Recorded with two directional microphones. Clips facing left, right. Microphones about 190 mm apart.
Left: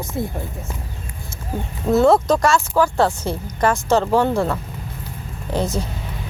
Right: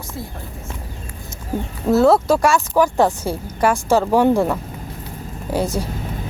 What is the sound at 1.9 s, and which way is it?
Speech, centre (ahead or behind).